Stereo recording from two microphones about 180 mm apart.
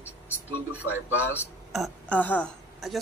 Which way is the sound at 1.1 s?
10° left (ahead or behind).